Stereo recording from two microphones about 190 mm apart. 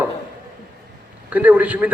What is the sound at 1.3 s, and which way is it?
Speech, 10° right (ahead or behind).